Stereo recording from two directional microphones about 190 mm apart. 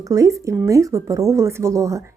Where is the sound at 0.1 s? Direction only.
15° right (ahead or behind).